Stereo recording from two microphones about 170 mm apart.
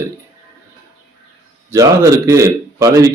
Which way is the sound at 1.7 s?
20° right (ahead or behind).